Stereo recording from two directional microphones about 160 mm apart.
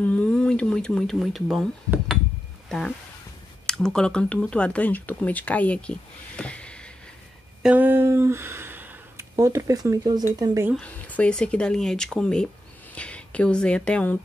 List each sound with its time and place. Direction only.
0.0 s speech: 10° left (ahead or behind)
3.6 s speech: 5° left (ahead or behind)
7.6 s speech: 10° right (ahead or behind)
10.8 s speech: 10° left (ahead or behind)